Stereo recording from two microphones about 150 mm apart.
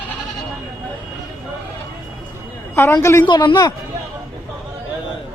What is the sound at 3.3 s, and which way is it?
Speech, 30° left (ahead or behind).